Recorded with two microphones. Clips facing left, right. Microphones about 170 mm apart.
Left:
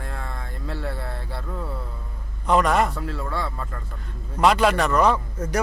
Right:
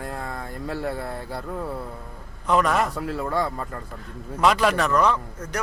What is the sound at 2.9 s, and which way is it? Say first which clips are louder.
Speech: right 2 dB; 10° right (ahead or behind).